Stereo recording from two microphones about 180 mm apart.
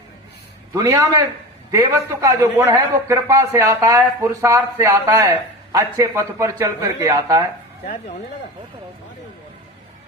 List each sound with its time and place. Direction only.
0.7 s a man's voice: 15° right (ahead or behind)